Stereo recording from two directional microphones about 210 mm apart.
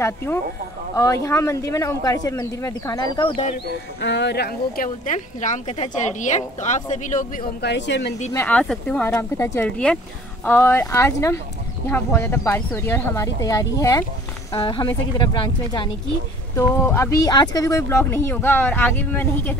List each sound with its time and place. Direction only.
0.0 s a woman's voice: 10° left (ahead or behind)
4.0 s speech: 55° left (ahead or behind); by 7.4 s 35° left (ahead or behind)
7.6 s speech: 55° left (ahead or behind)
8.3 s a woman's voice: 10° left (ahead or behind)